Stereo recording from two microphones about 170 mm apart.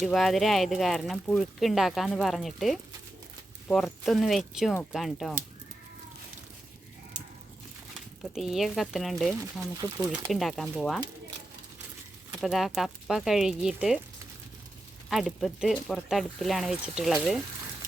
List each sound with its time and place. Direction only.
0.0 s speech: centre (ahead or behind)
7.9 s speech: centre (ahead or behind)
12.4 s speech: centre (ahead or behind)
15.1 s speech: centre (ahead or behind)